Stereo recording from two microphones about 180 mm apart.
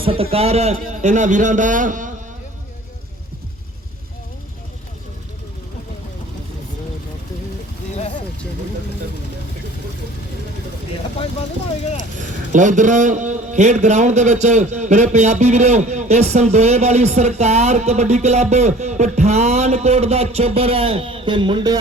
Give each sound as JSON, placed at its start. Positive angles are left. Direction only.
{"t": 0.0, "sound": "a man's voice", "side_deg": -30}
{"t": 7.9, "sound": "a sound", "side_deg": 35}
{"t": 12.5, "sound": "a man's voice", "side_deg": -45}